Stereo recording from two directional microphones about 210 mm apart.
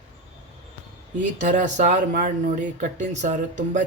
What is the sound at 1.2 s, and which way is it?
Speech, 35° right (ahead or behind).